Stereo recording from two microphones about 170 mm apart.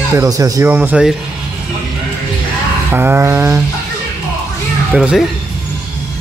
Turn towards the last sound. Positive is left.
turn(degrees=-5)  # may be behind; listen again after turning